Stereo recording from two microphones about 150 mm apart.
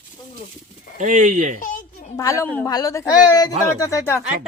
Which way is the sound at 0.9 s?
55° right (ahead or behind).